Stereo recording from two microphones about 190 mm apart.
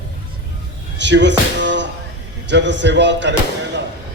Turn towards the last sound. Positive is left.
turn(degrees=-65)  # may be behind; listen again after turning